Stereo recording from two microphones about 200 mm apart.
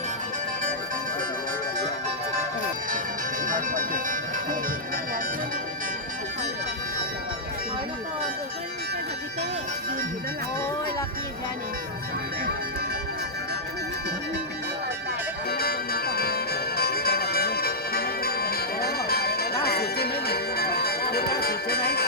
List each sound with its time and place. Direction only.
3.4 s music: 40° right (ahead or behind)
15.4 s music: 50° left (ahead or behind)